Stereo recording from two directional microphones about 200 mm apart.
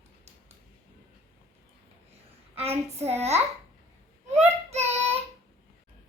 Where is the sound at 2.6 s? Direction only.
30° right (ahead or behind).